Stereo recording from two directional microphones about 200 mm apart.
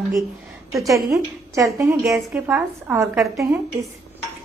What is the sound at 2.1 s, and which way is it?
A woman's voice, 5° right (ahead or behind).